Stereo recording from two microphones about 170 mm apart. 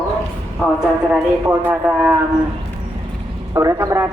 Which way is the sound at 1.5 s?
10° right (ahead or behind).